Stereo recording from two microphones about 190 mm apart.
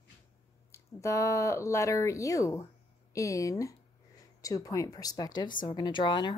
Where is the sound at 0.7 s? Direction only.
15° left (ahead or behind).